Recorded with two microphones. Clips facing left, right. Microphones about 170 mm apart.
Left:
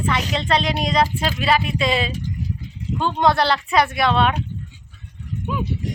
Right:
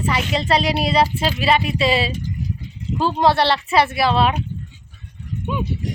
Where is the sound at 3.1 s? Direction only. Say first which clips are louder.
Right 1 dB; 5° right (ahead or behind).